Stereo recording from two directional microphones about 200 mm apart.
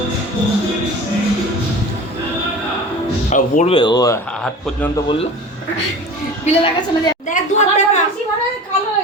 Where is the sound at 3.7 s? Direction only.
20° left (ahead or behind).